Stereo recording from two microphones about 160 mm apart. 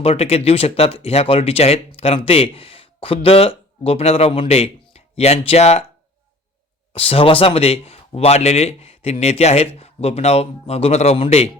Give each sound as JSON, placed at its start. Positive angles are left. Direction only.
{"t": 0.0, "sound": "speech", "side_deg": 40}
{"t": 6.9, "sound": "speech", "side_deg": 35}